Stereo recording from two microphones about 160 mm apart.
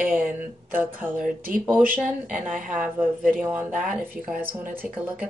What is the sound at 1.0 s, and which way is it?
Speech, 10° right (ahead or behind).